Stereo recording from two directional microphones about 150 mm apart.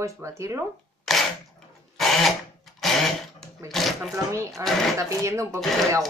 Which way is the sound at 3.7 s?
Centre (ahead or behind).